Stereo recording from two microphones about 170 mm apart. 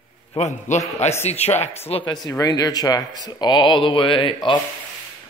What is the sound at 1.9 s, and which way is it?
Speech, 30° left (ahead or behind).